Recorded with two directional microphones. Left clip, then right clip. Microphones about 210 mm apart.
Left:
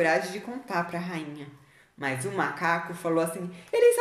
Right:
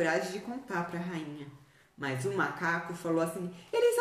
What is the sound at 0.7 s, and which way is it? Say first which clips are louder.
A woman's voice: left 6 dB; 10° right (ahead or behind).